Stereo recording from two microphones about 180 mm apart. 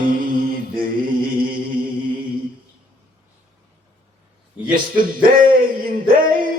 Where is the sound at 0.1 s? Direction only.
50° right (ahead or behind).